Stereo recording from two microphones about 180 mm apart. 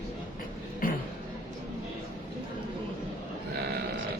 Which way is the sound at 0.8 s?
50° left (ahead or behind).